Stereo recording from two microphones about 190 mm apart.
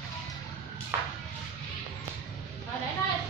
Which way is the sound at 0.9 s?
10° right (ahead or behind).